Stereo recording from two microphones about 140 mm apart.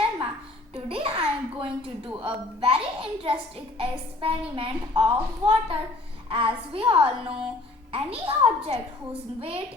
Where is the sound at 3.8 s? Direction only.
40° right (ahead or behind).